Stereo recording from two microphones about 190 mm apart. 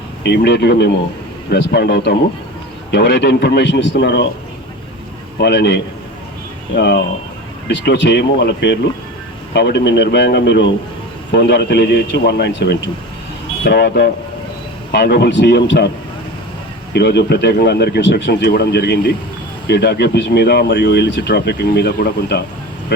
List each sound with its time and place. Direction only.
0.2 s speech: 60° left (ahead or behind)
5.4 s speech: 60° left (ahead or behind)
16.9 s speech: 60° left (ahead or behind)